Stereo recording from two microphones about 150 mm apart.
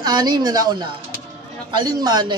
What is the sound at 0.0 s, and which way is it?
Speech, 30° right (ahead or behind).